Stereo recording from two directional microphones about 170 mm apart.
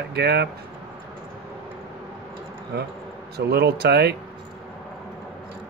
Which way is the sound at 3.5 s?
70° right (ahead or behind).